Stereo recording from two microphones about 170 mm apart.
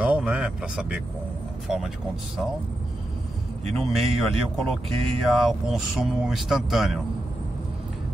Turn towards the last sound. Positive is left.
turn(degrees=0)  # may be behind; listen again after turning